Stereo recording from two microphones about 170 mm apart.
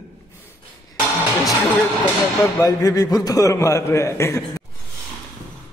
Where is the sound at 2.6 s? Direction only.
20° left (ahead or behind).